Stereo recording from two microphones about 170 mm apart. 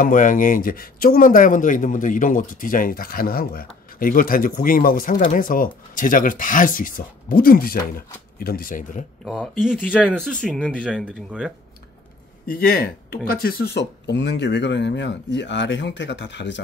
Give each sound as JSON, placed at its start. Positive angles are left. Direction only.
{"t": 0.0, "sound": "a man's voice", "side_deg": 50}
{"t": 9.2, "sound": "speech", "side_deg": -5}
{"t": 12.4, "sound": "speech", "side_deg": 65}